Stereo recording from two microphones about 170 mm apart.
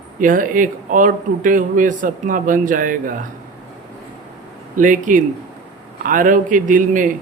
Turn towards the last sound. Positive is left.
turn(degrees=-50)  # may be behind; listen again after turning